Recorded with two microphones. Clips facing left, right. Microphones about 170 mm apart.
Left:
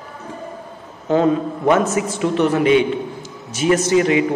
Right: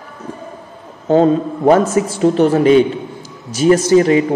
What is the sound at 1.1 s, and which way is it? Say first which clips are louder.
A man's voice: right 4 dB; 35° right (ahead or behind).